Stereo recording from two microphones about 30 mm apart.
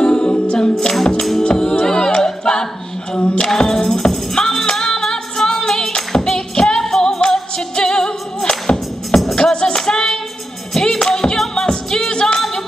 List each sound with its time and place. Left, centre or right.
0.0 s music: left
1.6 s a capella: left
3.2 s music: left
3.4 s music: centre
11.6 s music: left